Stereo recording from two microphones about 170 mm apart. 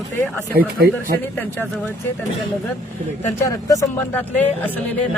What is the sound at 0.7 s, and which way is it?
Speech, 60° right (ahead or behind).